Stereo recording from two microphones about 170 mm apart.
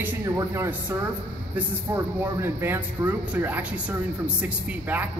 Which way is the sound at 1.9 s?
10° right (ahead or behind).